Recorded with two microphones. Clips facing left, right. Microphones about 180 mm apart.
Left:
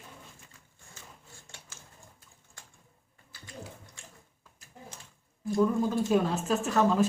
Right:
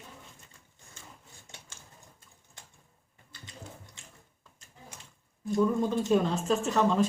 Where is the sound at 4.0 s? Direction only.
20° right (ahead or behind).